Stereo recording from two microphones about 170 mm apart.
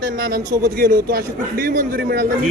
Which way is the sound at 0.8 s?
65° right (ahead or behind).